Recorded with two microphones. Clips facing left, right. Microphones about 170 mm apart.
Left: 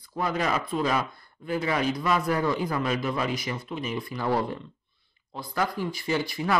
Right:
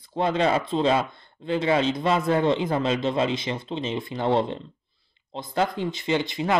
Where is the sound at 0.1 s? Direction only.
25° right (ahead or behind).